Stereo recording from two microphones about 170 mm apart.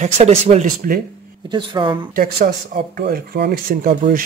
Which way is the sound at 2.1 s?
55° right (ahead or behind).